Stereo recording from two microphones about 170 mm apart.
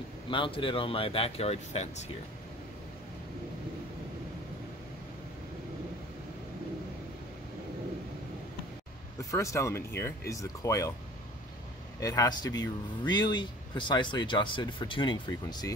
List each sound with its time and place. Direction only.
0.3 s speech: 30° left (ahead or behind)
9.3 s a man's voice: 15° left (ahead or behind)
12.0 s a man's voice: 20° left (ahead or behind)